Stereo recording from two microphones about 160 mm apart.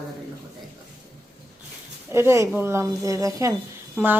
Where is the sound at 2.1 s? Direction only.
15° right (ahead or behind).